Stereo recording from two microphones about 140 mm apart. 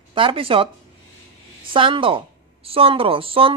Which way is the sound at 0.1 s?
40° right (ahead or behind).